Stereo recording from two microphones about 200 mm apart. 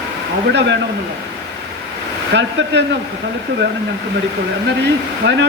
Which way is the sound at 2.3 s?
60° right (ahead or behind).